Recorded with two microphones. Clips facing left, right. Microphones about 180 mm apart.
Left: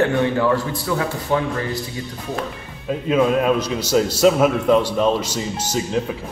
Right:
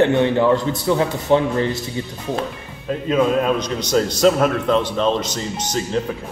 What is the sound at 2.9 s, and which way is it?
A man's voice, 5° left (ahead or behind).